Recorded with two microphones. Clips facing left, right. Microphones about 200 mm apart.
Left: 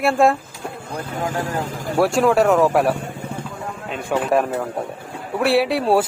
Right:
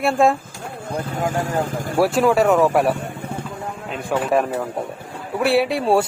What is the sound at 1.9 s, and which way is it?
Speech, centre (ahead or behind).